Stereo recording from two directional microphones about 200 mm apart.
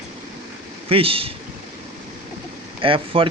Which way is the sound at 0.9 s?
30° right (ahead or behind).